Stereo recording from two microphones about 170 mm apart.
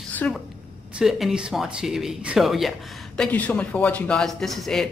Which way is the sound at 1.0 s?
Centre (ahead or behind).